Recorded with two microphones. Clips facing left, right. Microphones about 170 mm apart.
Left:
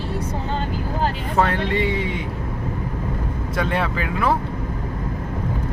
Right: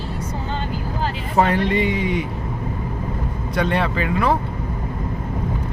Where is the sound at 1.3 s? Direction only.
15° right (ahead or behind).